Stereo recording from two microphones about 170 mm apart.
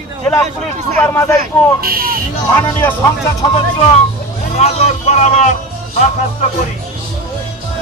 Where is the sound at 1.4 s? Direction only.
60° right (ahead or behind).